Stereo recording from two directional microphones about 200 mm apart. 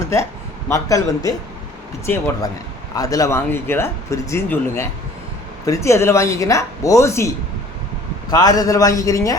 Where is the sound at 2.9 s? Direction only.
20° left (ahead or behind).